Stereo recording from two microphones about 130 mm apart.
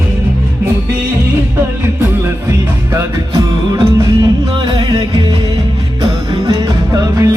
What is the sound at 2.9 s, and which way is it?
Music, 25° right (ahead or behind).